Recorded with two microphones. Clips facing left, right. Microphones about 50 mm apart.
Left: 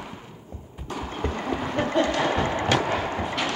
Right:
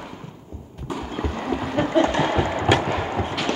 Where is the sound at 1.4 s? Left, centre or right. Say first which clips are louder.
Right 4 dB; centre.